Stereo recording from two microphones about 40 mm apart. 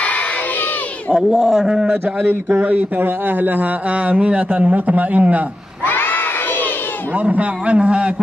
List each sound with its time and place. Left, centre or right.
1.3 s a man's voice: centre
2.6 s a man's voice: right
4.1 s a man's voice: right
7.2 s a man's voice: right